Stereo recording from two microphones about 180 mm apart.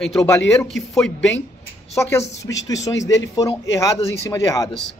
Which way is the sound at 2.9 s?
90° left.